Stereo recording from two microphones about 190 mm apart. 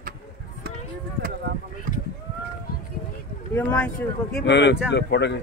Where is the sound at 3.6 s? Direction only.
10° left (ahead or behind).